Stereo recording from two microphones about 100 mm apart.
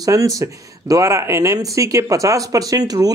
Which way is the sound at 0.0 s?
35° right (ahead or behind).